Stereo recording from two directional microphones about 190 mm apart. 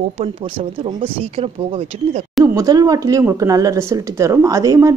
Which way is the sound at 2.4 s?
20° right (ahead or behind).